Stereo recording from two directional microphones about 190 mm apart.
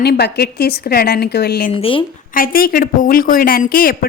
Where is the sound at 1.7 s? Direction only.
30° left (ahead or behind).